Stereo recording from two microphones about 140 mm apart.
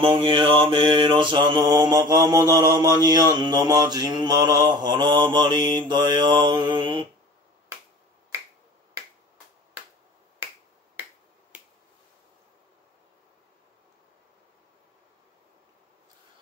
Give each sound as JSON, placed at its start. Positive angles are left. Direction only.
{"t": 0.2, "sound": "mantra", "side_deg": -40}